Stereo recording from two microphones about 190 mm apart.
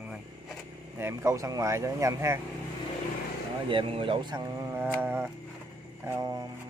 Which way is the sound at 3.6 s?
30° right (ahead or behind).